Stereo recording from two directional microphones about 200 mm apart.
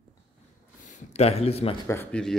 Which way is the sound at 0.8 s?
35° left (ahead or behind).